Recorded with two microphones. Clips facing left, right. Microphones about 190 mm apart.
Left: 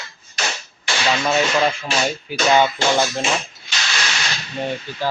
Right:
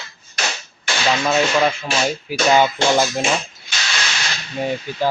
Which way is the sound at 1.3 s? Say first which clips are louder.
Right 1 dB; centre (ahead or behind).